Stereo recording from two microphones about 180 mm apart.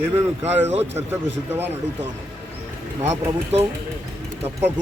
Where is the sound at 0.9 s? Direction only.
10° right (ahead or behind).